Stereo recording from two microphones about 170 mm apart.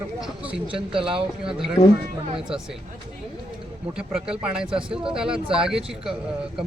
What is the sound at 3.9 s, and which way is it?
A man's voice, 5° right (ahead or behind).